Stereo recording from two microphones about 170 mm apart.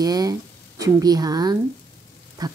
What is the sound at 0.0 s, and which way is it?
A woman's voice, 20° right (ahead or behind).